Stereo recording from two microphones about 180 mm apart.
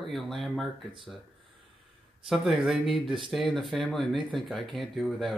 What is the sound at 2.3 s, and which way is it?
Speech, centre (ahead or behind).